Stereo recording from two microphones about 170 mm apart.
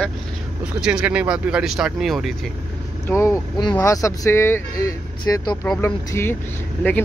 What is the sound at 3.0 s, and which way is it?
Speech, 15° left (ahead or behind).